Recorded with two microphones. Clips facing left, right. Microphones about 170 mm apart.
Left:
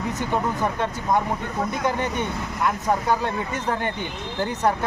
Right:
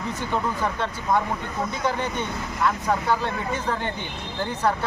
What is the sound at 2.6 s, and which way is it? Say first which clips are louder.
Speech: left 1 dB; 15° left (ahead or behind).